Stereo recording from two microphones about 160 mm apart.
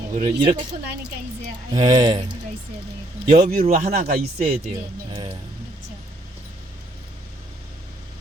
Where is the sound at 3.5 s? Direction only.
45° right (ahead or behind).